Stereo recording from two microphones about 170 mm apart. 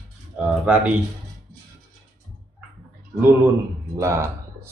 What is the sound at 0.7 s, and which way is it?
Speech, 10° right (ahead or behind).